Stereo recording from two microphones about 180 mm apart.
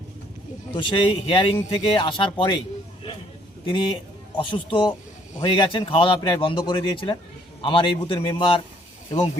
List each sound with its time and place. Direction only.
0.8 s a man's voice: 25° left (ahead or behind)
3.7 s a man's voice: 25° left (ahead or behind)